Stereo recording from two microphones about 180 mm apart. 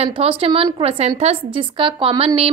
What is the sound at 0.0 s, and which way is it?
A woman's voice, 35° right (ahead or behind).